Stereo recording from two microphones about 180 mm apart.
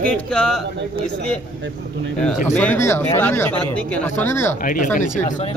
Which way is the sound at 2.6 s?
10° left (ahead or behind).